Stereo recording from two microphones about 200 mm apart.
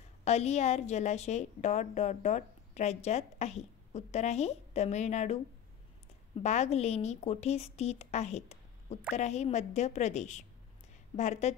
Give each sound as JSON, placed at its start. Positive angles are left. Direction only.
{"t": 0.2, "sound": "a woman's voice", "side_deg": 35}
{"t": 6.4, "sound": "a woman's voice", "side_deg": 35}